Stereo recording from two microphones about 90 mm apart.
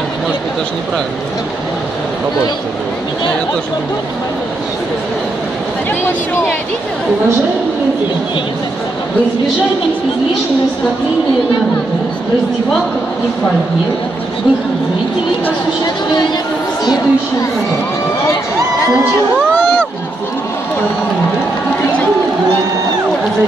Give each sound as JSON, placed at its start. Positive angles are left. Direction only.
{"t": 16.8, "sound": "speech", "side_deg": 50}